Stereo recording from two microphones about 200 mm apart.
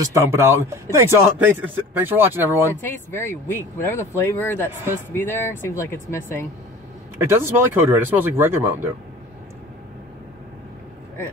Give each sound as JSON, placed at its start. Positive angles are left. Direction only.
{"t": 0.0, "sound": "speech", "side_deg": -15}
{"t": 2.8, "sound": "speech", "side_deg": 10}
{"t": 7.2, "sound": "speech", "side_deg": -10}